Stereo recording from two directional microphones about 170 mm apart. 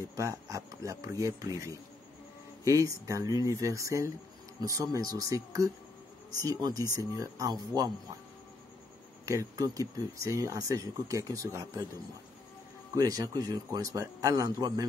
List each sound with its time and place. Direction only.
0.1 s speech: 20° right (ahead or behind)
9.2 s speech: 20° right (ahead or behind)
12.9 s speech: 20° right (ahead or behind)